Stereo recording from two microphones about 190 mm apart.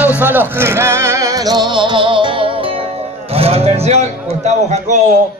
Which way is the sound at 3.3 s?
30° right (ahead or behind).